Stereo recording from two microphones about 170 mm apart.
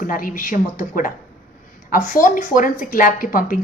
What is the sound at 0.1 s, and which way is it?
A woman's voice, 55° left (ahead or behind).